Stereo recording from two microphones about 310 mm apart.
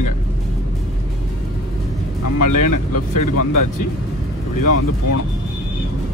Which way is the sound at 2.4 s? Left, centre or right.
Left.